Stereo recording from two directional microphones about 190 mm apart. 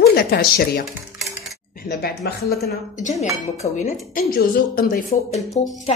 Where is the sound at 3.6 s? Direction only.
45° left (ahead or behind).